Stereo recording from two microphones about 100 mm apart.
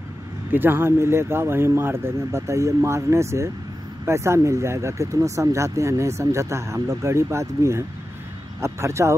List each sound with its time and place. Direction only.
0.5 s speech: 20° right (ahead or behind)